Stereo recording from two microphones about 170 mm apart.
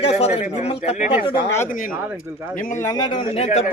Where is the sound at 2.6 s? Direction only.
50° left (ahead or behind).